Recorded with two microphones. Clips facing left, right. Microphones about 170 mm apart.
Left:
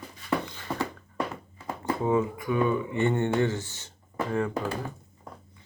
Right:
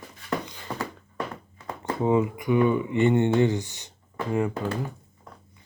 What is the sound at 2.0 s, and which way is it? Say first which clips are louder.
Speech: right 4 dB; 20° right (ahead or behind).